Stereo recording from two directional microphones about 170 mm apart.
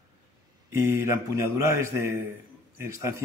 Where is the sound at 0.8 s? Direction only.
15° right (ahead or behind).